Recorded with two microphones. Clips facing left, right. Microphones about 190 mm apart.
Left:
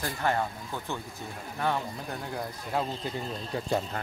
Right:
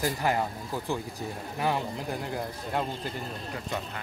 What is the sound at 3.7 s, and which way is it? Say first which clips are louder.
Speech: left 6 dB; 35° left (ahead or behind).